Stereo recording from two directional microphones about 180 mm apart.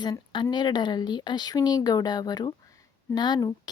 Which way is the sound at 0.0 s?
25° left (ahead or behind).